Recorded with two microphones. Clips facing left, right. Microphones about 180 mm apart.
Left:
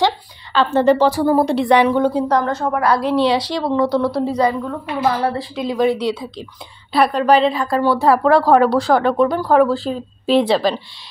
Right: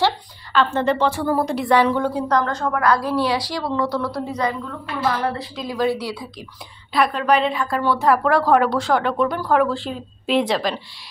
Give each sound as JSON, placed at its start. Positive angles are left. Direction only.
{"t": 0.5, "sound": "a woman's voice", "side_deg": 35}
{"t": 6.9, "sound": "a woman's voice", "side_deg": 35}